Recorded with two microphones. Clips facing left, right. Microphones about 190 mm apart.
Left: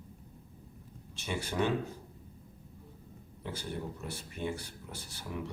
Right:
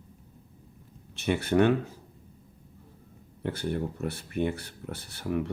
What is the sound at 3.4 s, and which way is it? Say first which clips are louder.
Speech: right 8 dB; 60° right (ahead or behind).